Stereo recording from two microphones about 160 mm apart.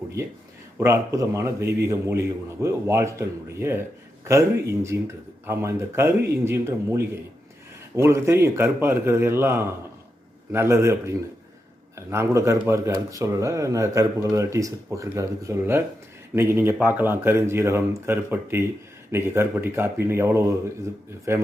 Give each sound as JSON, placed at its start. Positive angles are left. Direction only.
{"t": 0.2, "sound": "a man's voice", "side_deg": -20}